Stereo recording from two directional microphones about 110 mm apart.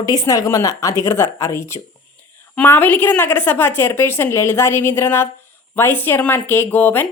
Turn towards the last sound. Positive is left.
turn(degrees=15)  # may be behind; listen again after turning